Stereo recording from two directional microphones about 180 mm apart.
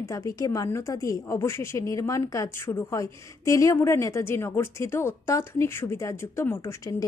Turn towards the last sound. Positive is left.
turn(degrees=20)  # may be behind; listen again after turning